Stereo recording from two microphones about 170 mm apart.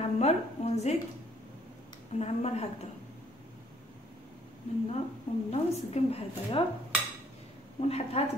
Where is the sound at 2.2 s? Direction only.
40° left (ahead or behind).